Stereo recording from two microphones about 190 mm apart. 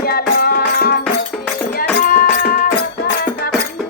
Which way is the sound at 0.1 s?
55° left (ahead or behind).